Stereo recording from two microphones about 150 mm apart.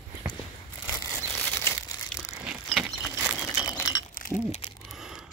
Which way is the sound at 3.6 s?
25° left (ahead or behind).